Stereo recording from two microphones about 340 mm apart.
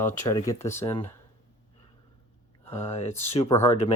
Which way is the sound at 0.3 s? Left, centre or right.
Centre.